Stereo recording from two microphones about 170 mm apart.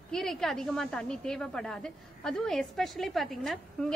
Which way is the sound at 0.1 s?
Centre (ahead or behind).